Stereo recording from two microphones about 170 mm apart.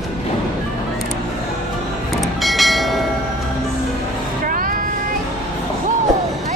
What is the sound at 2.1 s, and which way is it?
Train, centre (ahead or behind).